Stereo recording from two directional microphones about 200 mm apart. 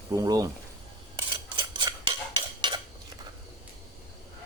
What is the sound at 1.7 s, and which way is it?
Stir, 25° right (ahead or behind).